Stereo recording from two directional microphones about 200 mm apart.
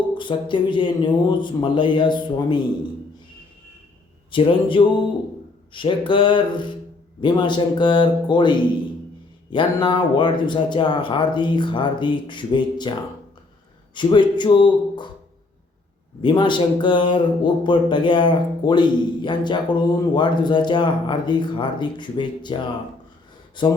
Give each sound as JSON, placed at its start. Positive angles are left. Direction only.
{"t": 0.1, "sound": "speech", "side_deg": 25}
{"t": 4.3, "sound": "speech", "side_deg": 25}
{"t": 13.9, "sound": "speech", "side_deg": 25}
{"t": 16.2, "sound": "speech", "side_deg": 20}